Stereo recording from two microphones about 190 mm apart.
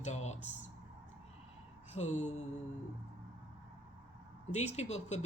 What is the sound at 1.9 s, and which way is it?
Speech, 35° left (ahead or behind).